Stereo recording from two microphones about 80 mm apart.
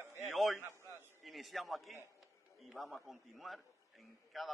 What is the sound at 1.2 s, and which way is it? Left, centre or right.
A man's voice, centre.